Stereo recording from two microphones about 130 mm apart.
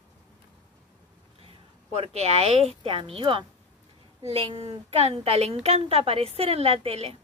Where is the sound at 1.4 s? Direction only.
50° right (ahead or behind).